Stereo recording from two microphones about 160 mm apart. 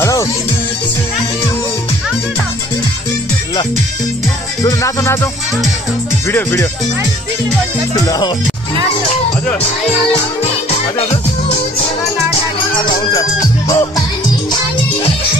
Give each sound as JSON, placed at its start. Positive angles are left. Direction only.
{"t": 0.0, "sound": "music", "side_deg": 20}
{"t": 4.6, "sound": "music", "side_deg": 20}
{"t": 7.9, "sound": "music", "side_deg": 25}
{"t": 12.8, "sound": "music", "side_deg": 25}